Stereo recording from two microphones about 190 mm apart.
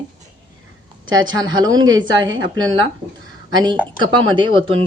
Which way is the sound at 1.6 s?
20° right (ahead or behind).